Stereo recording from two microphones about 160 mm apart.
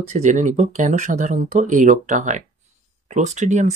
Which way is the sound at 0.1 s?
50° right (ahead or behind).